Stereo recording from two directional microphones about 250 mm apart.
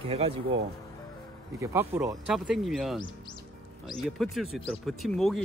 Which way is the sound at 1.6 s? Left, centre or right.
Centre.